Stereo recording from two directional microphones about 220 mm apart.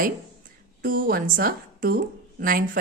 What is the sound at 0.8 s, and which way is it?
A woman's voice, 40° right (ahead or behind).